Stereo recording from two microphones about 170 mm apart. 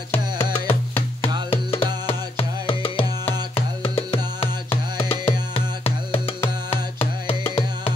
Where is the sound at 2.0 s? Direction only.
35° left (ahead or behind).